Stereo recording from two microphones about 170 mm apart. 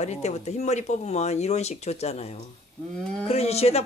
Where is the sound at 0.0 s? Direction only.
40° left (ahead or behind).